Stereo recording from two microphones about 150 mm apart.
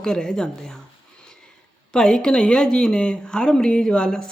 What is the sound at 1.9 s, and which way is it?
Speech, 5° left (ahead or behind).